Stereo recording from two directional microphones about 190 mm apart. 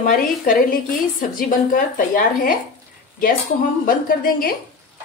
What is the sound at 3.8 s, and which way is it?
Speech, 45° left (ahead or behind).